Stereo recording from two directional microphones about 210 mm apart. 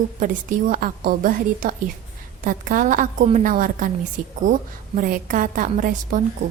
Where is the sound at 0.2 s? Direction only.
40° right (ahead or behind).